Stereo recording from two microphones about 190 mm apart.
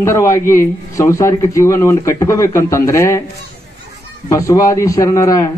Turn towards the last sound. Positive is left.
turn(degrees=15)  # may be behind; listen again after turning